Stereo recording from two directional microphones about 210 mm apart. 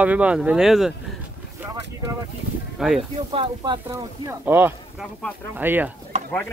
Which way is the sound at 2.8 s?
Centre (ahead or behind).